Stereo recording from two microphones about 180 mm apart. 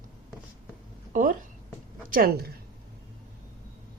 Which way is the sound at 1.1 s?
45° right (ahead or behind).